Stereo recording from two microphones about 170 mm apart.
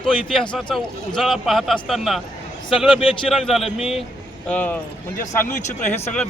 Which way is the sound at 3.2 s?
Centre (ahead or behind).